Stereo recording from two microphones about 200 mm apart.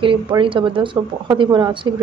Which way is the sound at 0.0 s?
25° right (ahead or behind).